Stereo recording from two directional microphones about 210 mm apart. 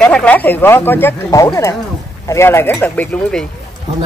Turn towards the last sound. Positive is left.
turn(degrees=10)  # may be behind; listen again after turning